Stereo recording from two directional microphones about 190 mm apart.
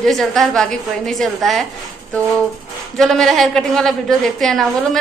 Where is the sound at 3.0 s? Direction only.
Centre (ahead or behind).